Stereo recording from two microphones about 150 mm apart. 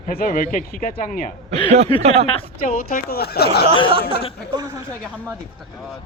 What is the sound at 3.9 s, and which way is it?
Speech, 35° right (ahead or behind).